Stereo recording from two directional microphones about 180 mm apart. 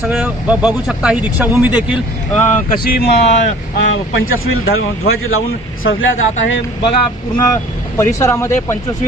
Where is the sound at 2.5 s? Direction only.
55° left (ahead or behind).